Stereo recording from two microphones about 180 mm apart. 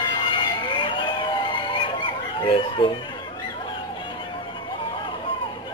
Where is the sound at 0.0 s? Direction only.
25° left (ahead or behind).